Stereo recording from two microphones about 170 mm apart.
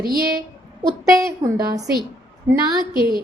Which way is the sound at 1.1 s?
20° right (ahead or behind).